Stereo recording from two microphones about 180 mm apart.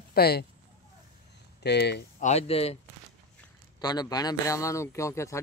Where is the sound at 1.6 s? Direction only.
65° left (ahead or behind).